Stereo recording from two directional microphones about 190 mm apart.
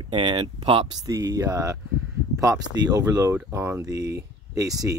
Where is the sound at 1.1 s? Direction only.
15° right (ahead or behind).